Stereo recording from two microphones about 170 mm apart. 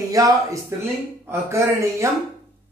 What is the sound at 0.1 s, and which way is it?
Speech, 20° right (ahead or behind).